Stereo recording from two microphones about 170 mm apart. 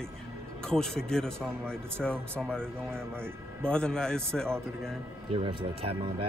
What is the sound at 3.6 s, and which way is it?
Speech, 5° left (ahead or behind).